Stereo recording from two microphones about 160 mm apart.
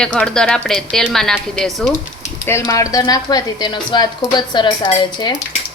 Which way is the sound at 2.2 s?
20° left (ahead or behind).